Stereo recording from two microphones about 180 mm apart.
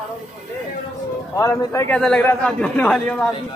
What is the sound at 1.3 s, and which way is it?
Speech, 15° left (ahead or behind).